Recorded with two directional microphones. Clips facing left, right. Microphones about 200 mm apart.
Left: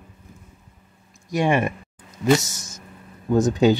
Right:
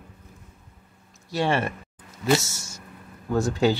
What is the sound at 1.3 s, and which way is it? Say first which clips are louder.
Speech: left 4 dB; 15° left (ahead or behind).